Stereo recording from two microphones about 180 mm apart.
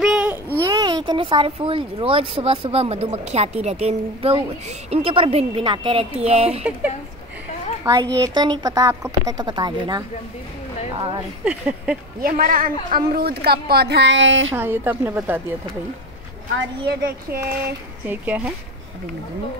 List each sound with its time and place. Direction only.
0.0 s a sound: 5° right (ahead or behind)
0.6 s speech: 20° right (ahead or behind); by 6.6 s 35° right (ahead or behind)
7.8 s a child's voice: 20° right (ahead or behind)
11.4 s a woman's voice: 5° right (ahead or behind)
12.2 s a woman's voice: 50° right (ahead or behind); by 14.5 s 90° right
14.5 s a woman's voice: 10° right (ahead or behind)
16.5 s speech: 65° right (ahead or behind)
18.0 s a woman's voice: 10° right (ahead or behind)